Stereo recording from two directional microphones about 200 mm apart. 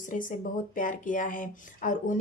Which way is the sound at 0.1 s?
40° left (ahead or behind).